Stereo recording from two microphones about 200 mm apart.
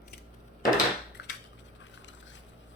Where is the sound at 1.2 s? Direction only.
55° left (ahead or behind).